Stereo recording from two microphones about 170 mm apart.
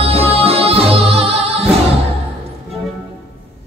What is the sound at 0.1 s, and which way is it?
Music, 35° right (ahead or behind).